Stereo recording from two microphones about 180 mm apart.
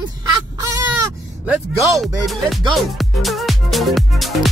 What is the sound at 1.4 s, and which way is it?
Fowl, 5° right (ahead or behind).